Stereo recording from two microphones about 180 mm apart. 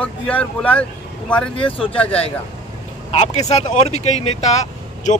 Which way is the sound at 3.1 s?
40° left (ahead or behind).